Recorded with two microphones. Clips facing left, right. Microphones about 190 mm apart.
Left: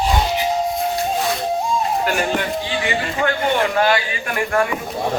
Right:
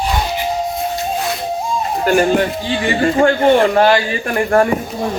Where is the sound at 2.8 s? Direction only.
40° right (ahead or behind).